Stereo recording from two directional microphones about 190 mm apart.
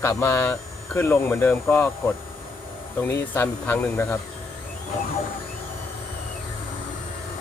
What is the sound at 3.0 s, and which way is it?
Speech, 10° left (ahead or behind).